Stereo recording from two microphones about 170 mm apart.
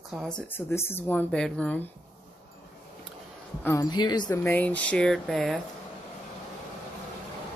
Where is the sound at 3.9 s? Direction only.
25° left (ahead or behind); by 5.6 s centre (ahead or behind).